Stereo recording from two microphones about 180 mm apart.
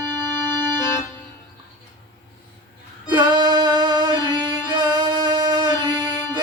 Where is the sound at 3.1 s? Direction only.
25° right (ahead or behind).